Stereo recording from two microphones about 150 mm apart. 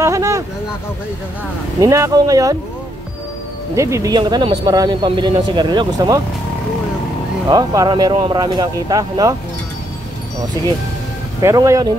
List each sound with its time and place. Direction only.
0.0 s speech: 20° right (ahead or behind)
1.8 s speech: 20° right (ahead or behind)
3.7 s speech: 20° right (ahead or behind)
7.4 s speech: 25° right (ahead or behind)
11.4 s speech: 20° right (ahead or behind)